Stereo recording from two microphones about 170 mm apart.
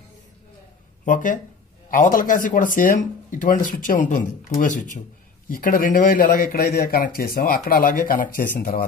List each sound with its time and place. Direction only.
1.0 s speech: 50° left (ahead or behind)